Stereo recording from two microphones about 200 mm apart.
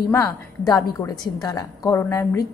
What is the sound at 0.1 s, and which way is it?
A woman's voice, 15° left (ahead or behind).